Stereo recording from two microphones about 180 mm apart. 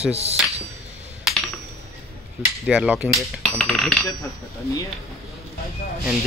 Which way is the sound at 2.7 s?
5° right (ahead or behind).